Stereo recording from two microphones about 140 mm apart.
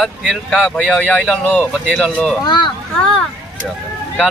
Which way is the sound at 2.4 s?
30° left (ahead or behind).